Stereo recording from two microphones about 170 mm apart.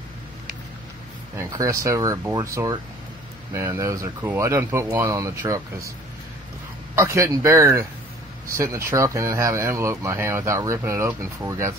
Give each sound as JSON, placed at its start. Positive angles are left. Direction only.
{"t": 1.3, "sound": "speech", "side_deg": -15}
{"t": 7.0, "sound": "speech", "side_deg": -15}